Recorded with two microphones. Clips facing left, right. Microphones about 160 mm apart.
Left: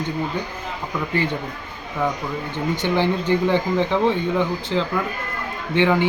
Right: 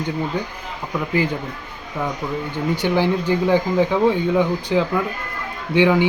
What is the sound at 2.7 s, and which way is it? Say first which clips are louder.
Speech: right 2 dB; 10° right (ahead or behind).